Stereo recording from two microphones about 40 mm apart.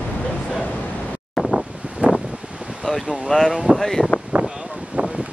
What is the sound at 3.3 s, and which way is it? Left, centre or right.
Speech, centre.